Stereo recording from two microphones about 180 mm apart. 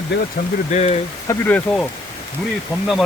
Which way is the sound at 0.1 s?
70° left (ahead or behind).